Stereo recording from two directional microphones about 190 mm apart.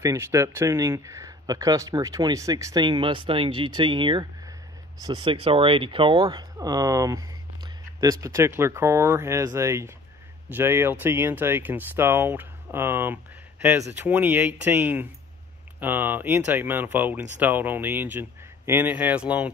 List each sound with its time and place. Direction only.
0.0 s speech: 15° right (ahead or behind)